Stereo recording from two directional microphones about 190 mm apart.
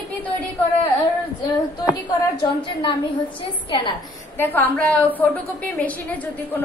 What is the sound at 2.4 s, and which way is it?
Speech, 25° left (ahead or behind).